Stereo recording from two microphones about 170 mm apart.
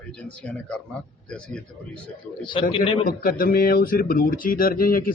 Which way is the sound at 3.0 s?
55° left (ahead or behind).